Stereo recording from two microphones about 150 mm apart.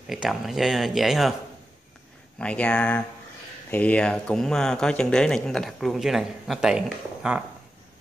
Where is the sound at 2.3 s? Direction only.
10° left (ahead or behind).